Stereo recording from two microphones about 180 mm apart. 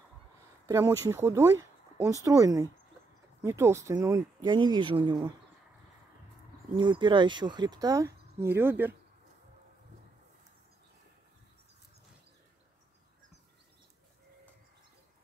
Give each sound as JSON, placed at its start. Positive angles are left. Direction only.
{"t": 0.7, "sound": "speech", "side_deg": -15}
{"t": 6.8, "sound": "speech", "side_deg": -25}